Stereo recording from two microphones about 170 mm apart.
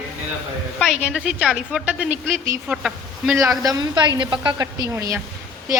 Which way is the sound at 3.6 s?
25° right (ahead or behind).